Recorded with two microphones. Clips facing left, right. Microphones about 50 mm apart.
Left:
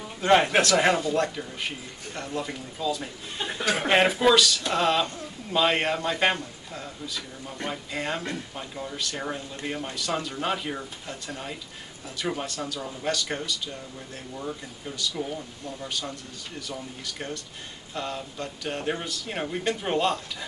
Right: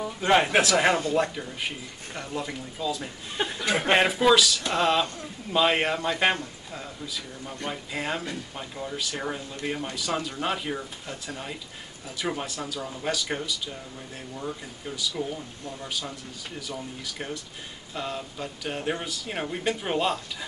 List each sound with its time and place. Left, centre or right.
0.2 s speech: centre
3.6 s speech: right
3.9 s speech: centre